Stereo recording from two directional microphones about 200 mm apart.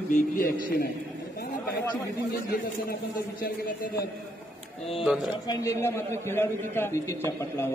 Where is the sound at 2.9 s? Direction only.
45° left (ahead or behind).